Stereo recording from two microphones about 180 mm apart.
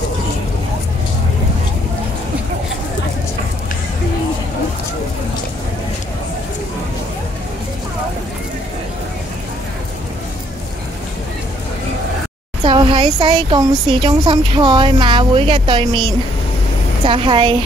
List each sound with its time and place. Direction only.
12.6 s a woman's voice: 25° right (ahead or behind)